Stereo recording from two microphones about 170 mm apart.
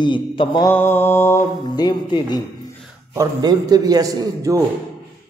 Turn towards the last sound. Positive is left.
turn(degrees=-20)  # may be behind; listen again after turning